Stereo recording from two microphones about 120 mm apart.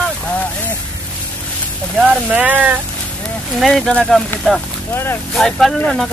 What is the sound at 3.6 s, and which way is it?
Speech, centre (ahead or behind).